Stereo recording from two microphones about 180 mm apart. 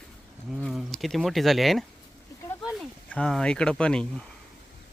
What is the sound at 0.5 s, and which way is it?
Speech, centre (ahead or behind).